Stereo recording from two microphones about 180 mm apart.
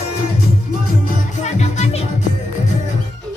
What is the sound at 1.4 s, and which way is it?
Music, 40° left (ahead or behind).